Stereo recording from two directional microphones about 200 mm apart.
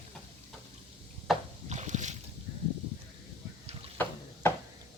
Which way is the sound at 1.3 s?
Centre (ahead or behind).